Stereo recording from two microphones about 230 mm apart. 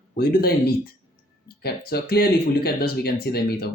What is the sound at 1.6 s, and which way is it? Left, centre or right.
Speech, left.